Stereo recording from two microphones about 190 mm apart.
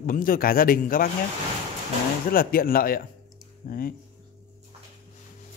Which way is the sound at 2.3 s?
50° left (ahead or behind).